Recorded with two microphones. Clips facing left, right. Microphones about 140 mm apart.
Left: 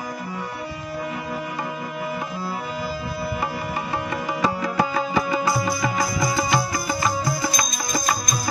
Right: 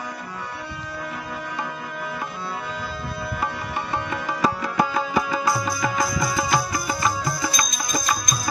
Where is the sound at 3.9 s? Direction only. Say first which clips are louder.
Even; 5° left (ahead or behind).